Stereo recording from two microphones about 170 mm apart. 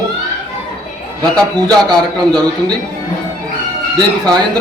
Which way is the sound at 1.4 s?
25° right (ahead or behind).